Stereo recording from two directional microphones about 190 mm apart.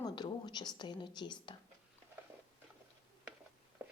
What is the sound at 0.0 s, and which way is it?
Speech, 20° left (ahead or behind).